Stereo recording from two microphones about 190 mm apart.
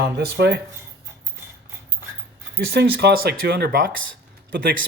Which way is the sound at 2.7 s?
60° right (ahead or behind).